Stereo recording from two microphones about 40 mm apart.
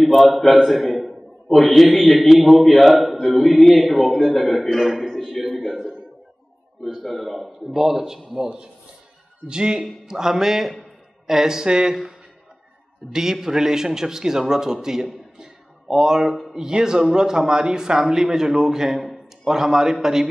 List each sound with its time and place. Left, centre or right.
0.0 s a man's voice: centre
4.6 s a man's voice: centre
5.0 s a sound: centre
5.3 s a man's voice: centre
7.2 s a man's voice: centre
13.1 s a man's voice: centre
15.3 s a sound: centre
16.5 s a man's voice: centre